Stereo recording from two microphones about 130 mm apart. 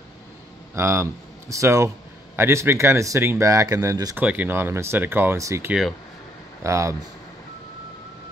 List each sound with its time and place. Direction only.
0.7 s speech: 20° right (ahead or behind)
4.2 s speech: 15° right (ahead or behind)
5.7 s speech: centre (ahead or behind)
6.6 s speech: 25° right (ahead or behind)